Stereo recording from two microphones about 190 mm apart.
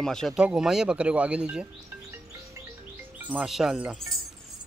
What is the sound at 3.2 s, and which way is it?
Speech, 5° right (ahead or behind).